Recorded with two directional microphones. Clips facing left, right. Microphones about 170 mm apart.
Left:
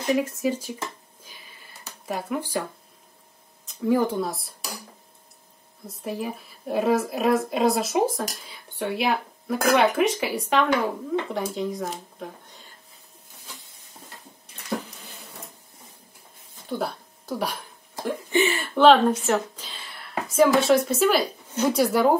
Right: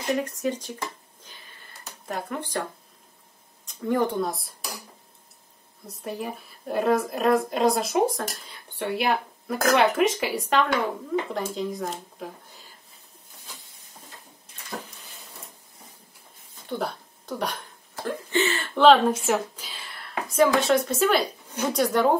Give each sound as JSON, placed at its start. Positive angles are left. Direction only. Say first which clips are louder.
{"t": 0.0, "sound": "speech", "louder": "left 3 dB", "side_deg": 5}
{"t": 2.0, "sound": "speech", "louder": "left 3 dB", "side_deg": 5}
{"t": 3.6, "sound": "speech", "louder": "left 2 dB", "side_deg": 5}
{"t": 5.9, "sound": "a woman's voice", "louder": "left 2 dB", "side_deg": 0}
{"t": 16.6, "sound": "speech", "louder": "left 1 dB", "side_deg": 0}
{"t": 18.8, "sound": "a woman's voice", "louder": "left 1 dB", "side_deg": 0}